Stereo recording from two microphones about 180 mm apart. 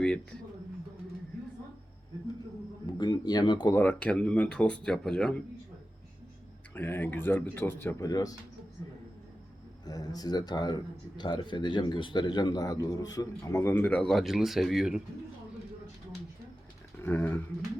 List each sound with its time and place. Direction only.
2.8 s a sound: 25° left (ahead or behind)
3.8 s speech: 10° left (ahead or behind)
6.7 s speech: 10° left (ahead or behind)
9.8 s a man's voice: 20° left (ahead or behind); by 15.0 s centre (ahead or behind)
17.0 s speech: 10° left (ahead or behind)